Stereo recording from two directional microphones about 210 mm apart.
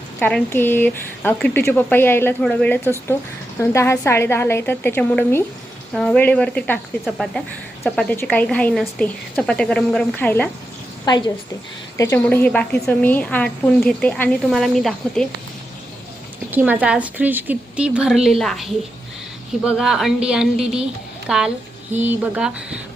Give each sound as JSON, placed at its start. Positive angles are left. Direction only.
{"t": 0.2, "sound": "a woman's voice", "side_deg": 10}
{"t": 11.1, "sound": "a woman's voice", "side_deg": 20}
{"t": 16.5, "sound": "a woman's voice", "side_deg": -10}